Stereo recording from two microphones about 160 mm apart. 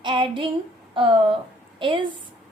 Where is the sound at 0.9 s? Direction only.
30° right (ahead or behind).